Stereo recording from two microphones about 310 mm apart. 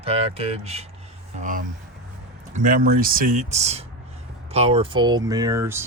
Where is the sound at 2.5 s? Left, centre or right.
Right.